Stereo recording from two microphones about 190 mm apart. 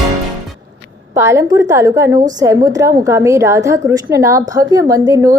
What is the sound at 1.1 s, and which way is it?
A woman's voice, 15° right (ahead or behind).